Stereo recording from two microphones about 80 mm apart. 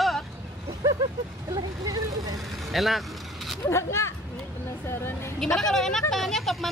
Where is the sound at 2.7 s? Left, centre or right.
Centre.